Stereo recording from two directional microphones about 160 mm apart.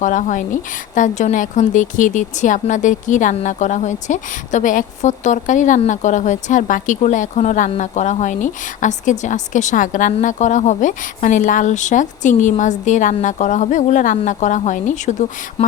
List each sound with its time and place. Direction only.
0.0 s a woman's voice: 55° left (ahead or behind)